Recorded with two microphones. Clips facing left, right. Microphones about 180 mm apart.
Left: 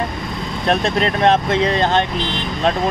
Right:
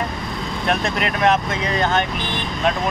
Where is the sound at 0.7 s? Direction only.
35° left (ahead or behind).